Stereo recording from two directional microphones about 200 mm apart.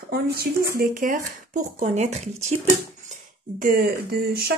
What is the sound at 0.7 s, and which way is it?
Speech, 45° right (ahead or behind).